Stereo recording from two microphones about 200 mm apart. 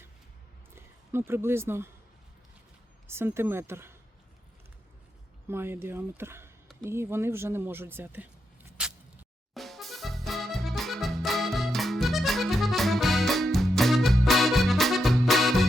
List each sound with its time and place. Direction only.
0.8 s speech: 10° right (ahead or behind)
3.1 s speech: 10° right (ahead or behind)
5.5 s speech: 10° right (ahead or behind)
8.8 s a sound: 5° right (ahead or behind)
9.6 s accordion: centre (ahead or behind)